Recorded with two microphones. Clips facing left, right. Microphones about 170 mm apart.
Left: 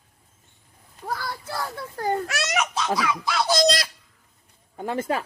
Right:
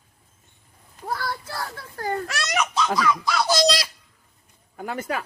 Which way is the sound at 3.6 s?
50° left (ahead or behind).